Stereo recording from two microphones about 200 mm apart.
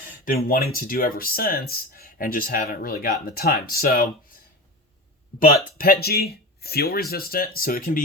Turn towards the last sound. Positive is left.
turn(degrees=45)  # may be behind; listen again after turning